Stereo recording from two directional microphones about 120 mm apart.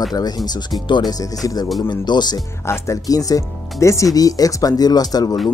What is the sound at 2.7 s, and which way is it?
Speech, 25° left (ahead or behind).